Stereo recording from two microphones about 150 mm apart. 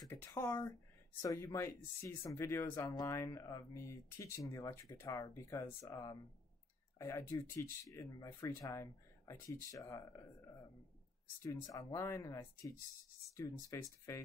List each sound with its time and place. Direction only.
0.0 s a sound: 15° left (ahead or behind)
0.4 s speech: 20° left (ahead or behind)
2.8 s speech: 25° left (ahead or behind)
11.4 s speech: 20° left (ahead or behind)